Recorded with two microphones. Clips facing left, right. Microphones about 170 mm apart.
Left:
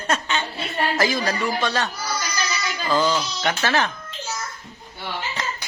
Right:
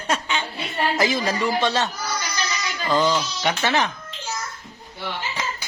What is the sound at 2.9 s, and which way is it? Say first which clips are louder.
Speech: right 1 dB; 20° right (ahead or behind).